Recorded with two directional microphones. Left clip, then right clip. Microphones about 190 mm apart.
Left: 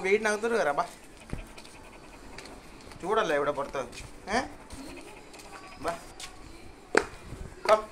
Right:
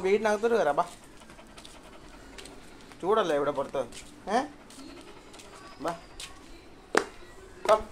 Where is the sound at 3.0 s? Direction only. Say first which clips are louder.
Right 1 dB; 5° right (ahead or behind).